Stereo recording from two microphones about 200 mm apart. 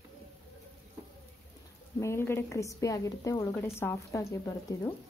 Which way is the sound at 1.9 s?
15° left (ahead or behind).